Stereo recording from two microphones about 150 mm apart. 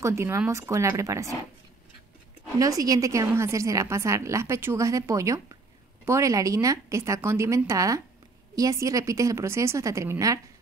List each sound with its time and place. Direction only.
0.0 s a woman's voice: 20° right (ahead or behind)
2.6 s a woman's voice: 25° right (ahead or behind)